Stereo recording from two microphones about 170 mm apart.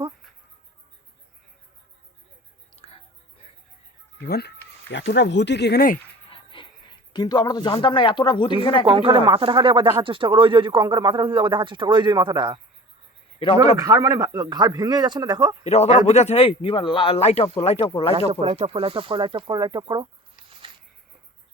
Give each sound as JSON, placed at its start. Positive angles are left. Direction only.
{"t": 2.8, "sound": "music", "side_deg": 35}
{"t": 4.2, "sound": "speech", "side_deg": 70}
{"t": 4.9, "sound": "speech", "side_deg": 90}
{"t": 6.3, "sound": "speech", "side_deg": 30}
{"t": 8.8, "sound": "speech", "side_deg": -30}
{"t": 13.4, "sound": "speech", "side_deg": 35}
{"t": 13.7, "sound": "speech", "side_deg": -20}
{"t": 15.6, "sound": "speech", "side_deg": 40}
{"t": 18.3, "sound": "speech", "side_deg": -35}